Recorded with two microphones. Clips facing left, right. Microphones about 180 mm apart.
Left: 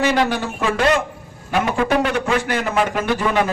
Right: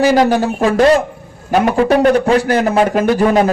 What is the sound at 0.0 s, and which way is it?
A man's voice, 40° right (ahead or behind).